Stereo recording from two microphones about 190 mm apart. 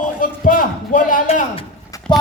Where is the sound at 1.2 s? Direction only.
30° left (ahead or behind).